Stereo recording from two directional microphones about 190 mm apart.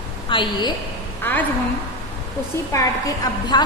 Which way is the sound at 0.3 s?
25° left (ahead or behind).